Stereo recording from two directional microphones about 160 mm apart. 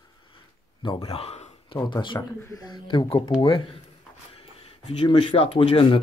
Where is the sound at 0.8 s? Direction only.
35° left (ahead or behind).